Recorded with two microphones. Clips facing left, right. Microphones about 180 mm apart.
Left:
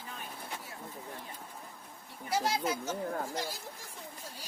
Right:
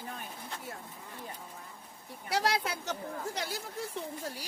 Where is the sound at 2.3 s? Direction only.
70° right (ahead or behind).